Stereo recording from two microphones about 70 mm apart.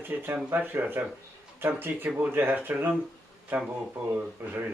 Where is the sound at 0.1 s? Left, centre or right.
Right.